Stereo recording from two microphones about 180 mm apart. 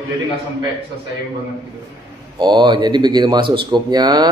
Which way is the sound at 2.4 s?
25° right (ahead or behind).